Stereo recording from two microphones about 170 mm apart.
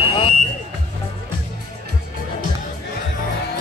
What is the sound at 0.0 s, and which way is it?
Buzzer, 30° left (ahead or behind).